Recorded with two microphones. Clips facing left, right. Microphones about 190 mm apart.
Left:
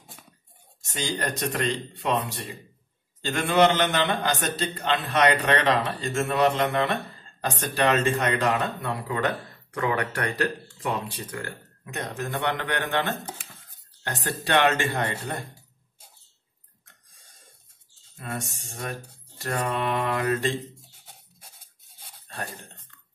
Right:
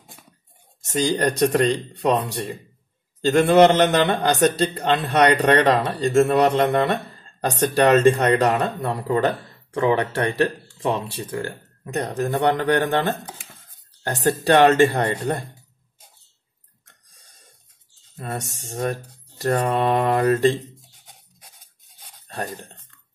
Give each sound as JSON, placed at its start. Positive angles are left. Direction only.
{"t": 1.0, "sound": "a man's voice", "side_deg": -40}
{"t": 18.2, "sound": "a man's voice", "side_deg": -40}